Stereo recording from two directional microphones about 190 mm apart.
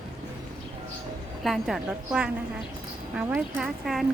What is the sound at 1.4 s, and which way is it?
A woman's voice, centre (ahead or behind).